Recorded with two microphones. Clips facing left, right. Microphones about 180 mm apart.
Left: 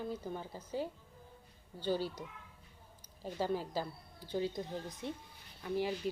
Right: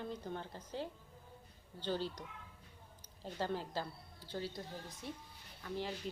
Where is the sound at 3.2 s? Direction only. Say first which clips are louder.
Left 4 dB; 10° left (ahead or behind).